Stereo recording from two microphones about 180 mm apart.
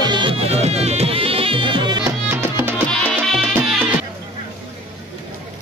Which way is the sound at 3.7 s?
5° right (ahead or behind).